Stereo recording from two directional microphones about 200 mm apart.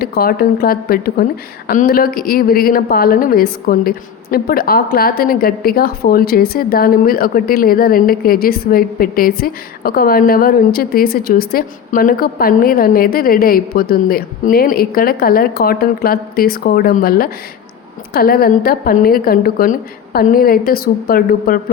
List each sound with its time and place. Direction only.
0.0 s a woman's voice: 50° left (ahead or behind)